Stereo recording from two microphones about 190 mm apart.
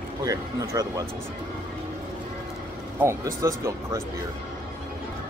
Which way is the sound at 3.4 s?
15° right (ahead or behind).